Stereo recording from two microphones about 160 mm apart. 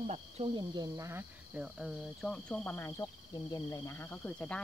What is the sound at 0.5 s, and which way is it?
Speech, 25° right (ahead or behind).